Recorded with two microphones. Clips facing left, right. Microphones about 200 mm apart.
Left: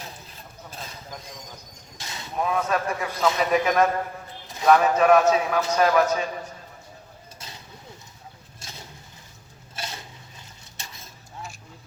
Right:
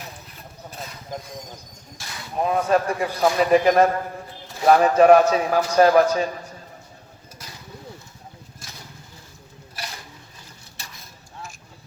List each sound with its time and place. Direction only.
2.0 s vehicle: 20° left (ahead or behind)
2.4 s a man's voice: 30° right (ahead or behind)
9.7 s a sound: 25° left (ahead or behind)